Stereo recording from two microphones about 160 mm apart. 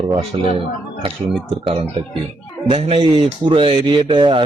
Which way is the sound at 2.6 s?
35° right (ahead or behind).